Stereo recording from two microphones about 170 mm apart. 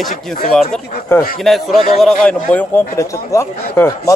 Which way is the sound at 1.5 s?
Centre (ahead or behind).